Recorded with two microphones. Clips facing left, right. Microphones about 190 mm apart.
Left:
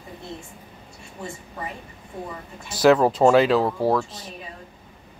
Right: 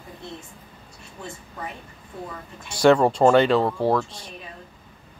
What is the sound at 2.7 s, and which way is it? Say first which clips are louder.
Speech: even; centre (ahead or behind).